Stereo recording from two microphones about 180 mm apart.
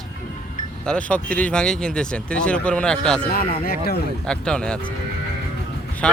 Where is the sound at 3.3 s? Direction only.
55° left (ahead or behind).